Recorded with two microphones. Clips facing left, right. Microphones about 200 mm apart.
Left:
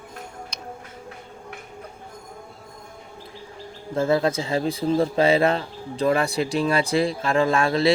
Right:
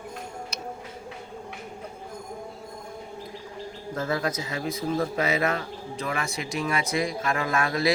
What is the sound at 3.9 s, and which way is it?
Speech, 25° left (ahead or behind).